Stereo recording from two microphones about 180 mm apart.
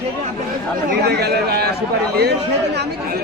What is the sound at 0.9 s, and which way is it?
Speech, 60° right (ahead or behind).